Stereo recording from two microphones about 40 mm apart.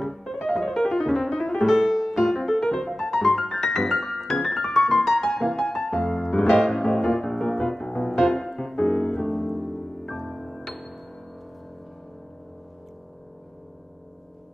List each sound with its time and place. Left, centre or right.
0.2 s piano: centre
1.8 s music: centre
10.6 s music: centre